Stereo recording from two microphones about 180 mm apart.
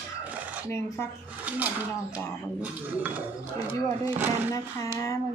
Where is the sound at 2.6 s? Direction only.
10° right (ahead or behind).